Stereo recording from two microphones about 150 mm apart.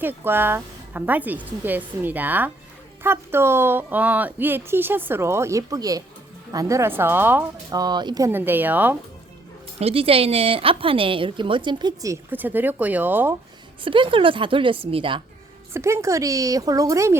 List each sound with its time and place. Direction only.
0.0 s speech: 15° right (ahead or behind)
7.7 s speech: 25° right (ahead or behind)
8.3 s speech: 15° right (ahead or behind)
9.8 s a woman's voice: 40° right (ahead or behind); by 13.3 s 15° right (ahead or behind)
13.8 s a woman's voice: 35° right (ahead or behind)
15.7 s speech: 20° right (ahead or behind)